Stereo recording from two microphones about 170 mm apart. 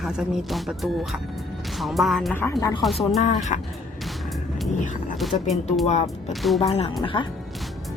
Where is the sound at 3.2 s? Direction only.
45° left (ahead or behind).